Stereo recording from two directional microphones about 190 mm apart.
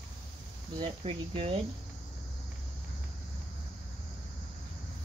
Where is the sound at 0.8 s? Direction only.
30° right (ahead or behind).